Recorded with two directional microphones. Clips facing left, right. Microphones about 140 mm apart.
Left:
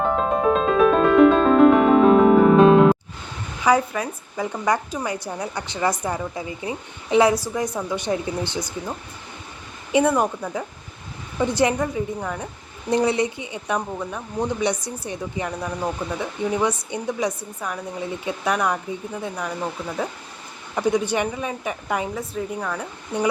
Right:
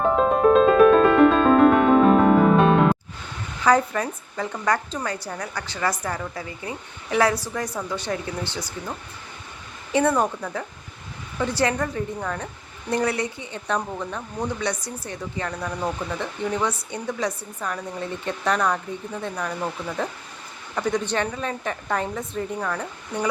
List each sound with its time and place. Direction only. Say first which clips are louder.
0.0 s music: right 2 dB; centre (ahead or behind)
3.6 s speech: even; 10° left (ahead or behind)